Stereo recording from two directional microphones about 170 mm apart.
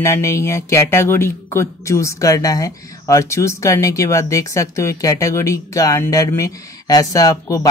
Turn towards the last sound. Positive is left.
turn(degrees=20)  # may be behind; listen again after turning